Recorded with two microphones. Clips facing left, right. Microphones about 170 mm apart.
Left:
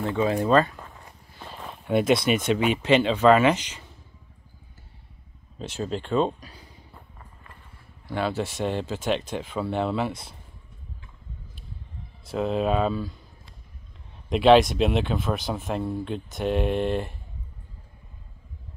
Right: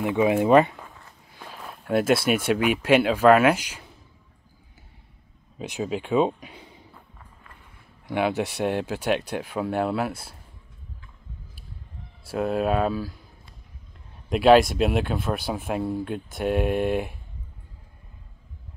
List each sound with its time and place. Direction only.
0.0 s speech: 15° right (ahead or behind)
1.4 s speech: 5° right (ahead or behind)
5.6 s speech: 10° right (ahead or behind)
6.4 s speech: 25° right (ahead or behind)
8.1 s speech: 15° right (ahead or behind)
12.3 s speech: 5° right (ahead or behind)
14.3 s speech: 5° right (ahead or behind)